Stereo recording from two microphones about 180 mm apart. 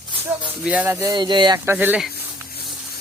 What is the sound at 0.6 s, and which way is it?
Speech, 10° right (ahead or behind).